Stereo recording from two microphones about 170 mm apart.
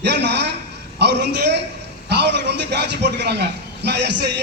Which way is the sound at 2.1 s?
80° right.